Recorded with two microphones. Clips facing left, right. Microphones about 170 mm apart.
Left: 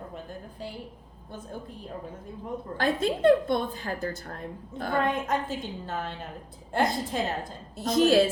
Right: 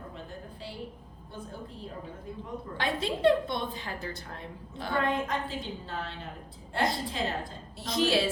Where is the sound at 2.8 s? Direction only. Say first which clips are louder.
Left 5 dB; 45° left (ahead or behind).